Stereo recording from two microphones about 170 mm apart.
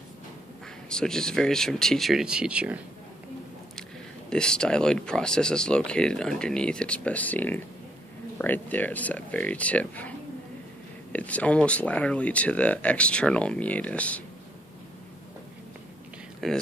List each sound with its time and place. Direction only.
0.8 s speech: 5° left (ahead or behind)
4.3 s speech: 5° left (ahead or behind)
16.4 s speech: centre (ahead or behind)